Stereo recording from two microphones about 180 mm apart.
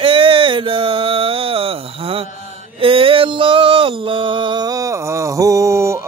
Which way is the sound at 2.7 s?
30° right (ahead or behind).